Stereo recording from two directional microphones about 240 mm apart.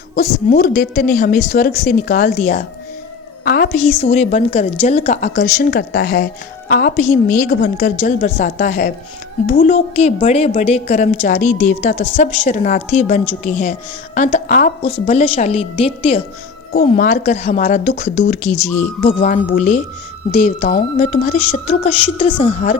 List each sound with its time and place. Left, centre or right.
0.5 s a woman's voice: left
5.4 s a woman's voice: left